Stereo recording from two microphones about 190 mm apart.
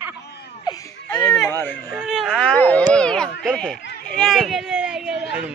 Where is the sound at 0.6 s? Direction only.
15° left (ahead or behind).